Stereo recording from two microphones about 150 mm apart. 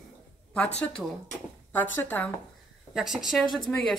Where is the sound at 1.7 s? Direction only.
10° left (ahead or behind).